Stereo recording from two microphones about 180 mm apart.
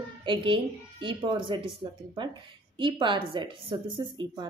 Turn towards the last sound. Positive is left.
turn(degrees=-25)  # may be behind; listen again after turning